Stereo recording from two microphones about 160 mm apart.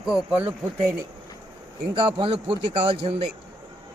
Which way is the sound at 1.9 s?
35° right (ahead or behind).